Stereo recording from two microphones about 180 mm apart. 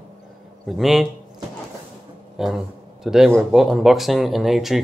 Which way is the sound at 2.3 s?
Centre (ahead or behind).